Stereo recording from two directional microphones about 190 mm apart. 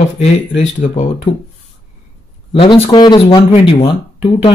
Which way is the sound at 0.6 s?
40° left (ahead or behind).